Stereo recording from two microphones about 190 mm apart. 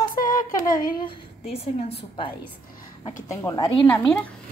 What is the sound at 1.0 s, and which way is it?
A woman's voice, 30° left (ahead or behind).